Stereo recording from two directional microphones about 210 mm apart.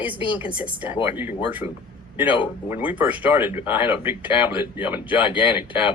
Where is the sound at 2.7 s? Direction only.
5° right (ahead or behind).